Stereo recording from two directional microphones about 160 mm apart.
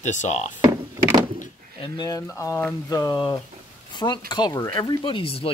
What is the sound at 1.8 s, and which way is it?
Speech, 25° left (ahead or behind).